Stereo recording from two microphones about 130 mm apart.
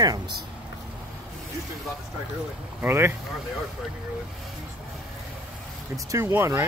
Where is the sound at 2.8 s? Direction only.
20° right (ahead or behind).